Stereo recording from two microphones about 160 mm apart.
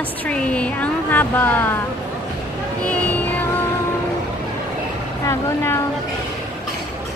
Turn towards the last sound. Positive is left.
turn(degrees=15)  # may be behind; listen again after turning